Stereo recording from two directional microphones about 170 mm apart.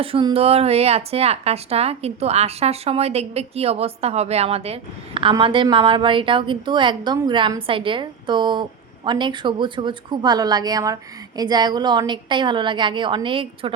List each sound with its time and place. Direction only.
0.0 s a woman's voice: 30° right (ahead or behind)